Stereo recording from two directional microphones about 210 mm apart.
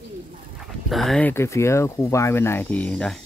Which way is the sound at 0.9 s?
Centre (ahead or behind).